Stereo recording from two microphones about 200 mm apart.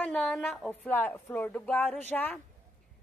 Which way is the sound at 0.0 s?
Centre (ahead or behind).